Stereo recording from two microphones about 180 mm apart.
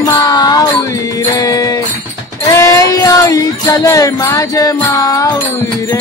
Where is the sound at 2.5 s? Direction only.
15° left (ahead or behind).